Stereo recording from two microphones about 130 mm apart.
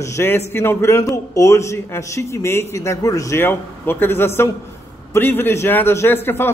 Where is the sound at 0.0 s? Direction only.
20° left (ahead or behind).